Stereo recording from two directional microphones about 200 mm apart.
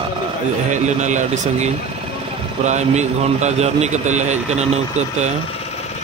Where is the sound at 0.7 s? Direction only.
35° right (ahead or behind).